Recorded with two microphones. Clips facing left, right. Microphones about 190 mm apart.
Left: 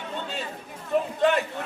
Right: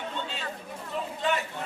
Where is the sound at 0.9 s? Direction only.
50° left (ahead or behind).